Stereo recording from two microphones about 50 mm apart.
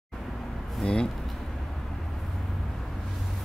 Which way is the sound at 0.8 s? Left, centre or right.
Left.